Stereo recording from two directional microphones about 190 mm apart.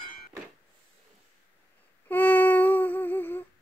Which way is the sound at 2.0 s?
10° left (ahead or behind).